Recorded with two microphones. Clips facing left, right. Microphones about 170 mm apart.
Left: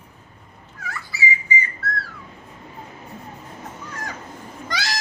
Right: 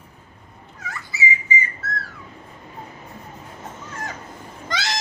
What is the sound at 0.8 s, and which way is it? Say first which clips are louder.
Dog: even; 20° right (ahead or behind).